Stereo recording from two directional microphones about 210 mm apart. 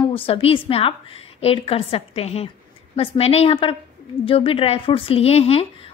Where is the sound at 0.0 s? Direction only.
25° left (ahead or behind).